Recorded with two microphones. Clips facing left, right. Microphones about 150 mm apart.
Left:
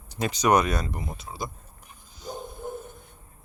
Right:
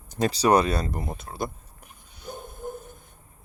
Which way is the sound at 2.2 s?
50° right (ahead or behind).